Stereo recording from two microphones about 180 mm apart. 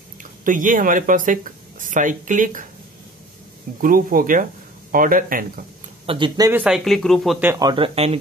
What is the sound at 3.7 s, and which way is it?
Speech, 50° right (ahead or behind).